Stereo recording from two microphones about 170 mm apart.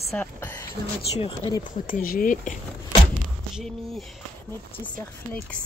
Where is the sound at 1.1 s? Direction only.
30° left (ahead or behind).